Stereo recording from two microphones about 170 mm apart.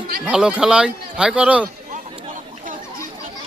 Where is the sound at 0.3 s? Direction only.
5° right (ahead or behind).